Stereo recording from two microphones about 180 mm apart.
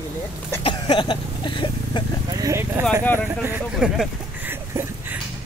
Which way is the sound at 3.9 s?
10° right (ahead or behind).